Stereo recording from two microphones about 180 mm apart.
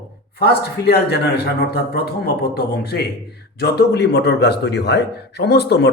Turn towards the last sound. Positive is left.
turn(degrees=65)  # may be behind; listen again after turning